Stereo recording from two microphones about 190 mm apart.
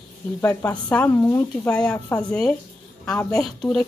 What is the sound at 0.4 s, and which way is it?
Speech, 15° left (ahead or behind).